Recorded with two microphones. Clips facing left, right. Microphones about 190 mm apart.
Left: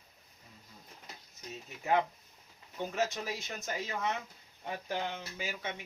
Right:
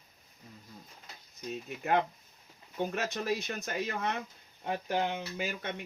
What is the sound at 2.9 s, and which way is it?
Speech, 60° right (ahead or behind).